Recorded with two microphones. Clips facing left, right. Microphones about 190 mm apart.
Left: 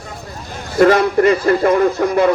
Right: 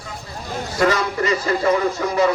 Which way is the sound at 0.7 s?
55° left (ahead or behind).